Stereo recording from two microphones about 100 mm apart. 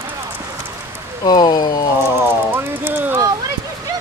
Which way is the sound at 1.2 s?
45° left (ahead or behind).